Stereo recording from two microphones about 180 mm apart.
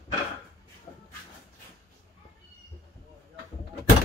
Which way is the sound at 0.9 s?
20° left (ahead or behind).